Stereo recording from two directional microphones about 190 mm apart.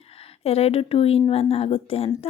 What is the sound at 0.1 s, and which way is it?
Speech, 30° left (ahead or behind).